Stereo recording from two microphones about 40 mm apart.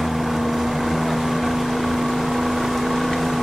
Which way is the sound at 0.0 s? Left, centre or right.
Centre.